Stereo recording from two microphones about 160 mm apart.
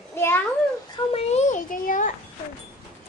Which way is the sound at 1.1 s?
40° left (ahead or behind).